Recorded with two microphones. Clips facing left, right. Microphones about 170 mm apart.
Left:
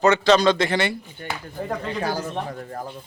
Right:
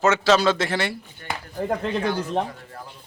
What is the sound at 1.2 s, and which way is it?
Speech, 20° left (ahead or behind).